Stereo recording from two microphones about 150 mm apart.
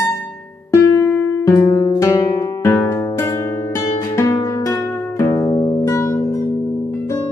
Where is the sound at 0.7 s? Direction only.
15° left (ahead or behind).